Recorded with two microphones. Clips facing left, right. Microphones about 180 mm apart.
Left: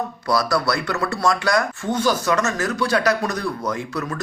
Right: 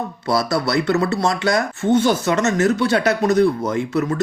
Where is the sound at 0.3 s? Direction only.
25° right (ahead or behind).